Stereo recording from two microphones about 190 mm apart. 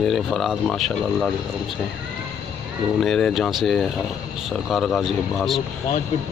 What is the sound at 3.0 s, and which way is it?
Speech, 5° left (ahead or behind).